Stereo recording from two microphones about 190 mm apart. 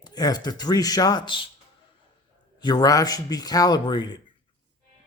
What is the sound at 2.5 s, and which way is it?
A man's voice, 20° left (ahead or behind).